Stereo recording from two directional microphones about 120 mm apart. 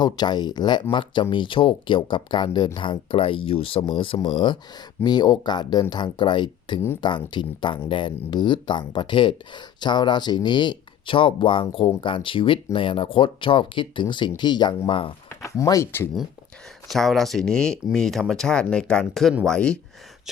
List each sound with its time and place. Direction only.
0.0 s speech: 35° left (ahead or behind)
15.4 s speech: 30° left (ahead or behind)
16.9 s speech: centre (ahead or behind)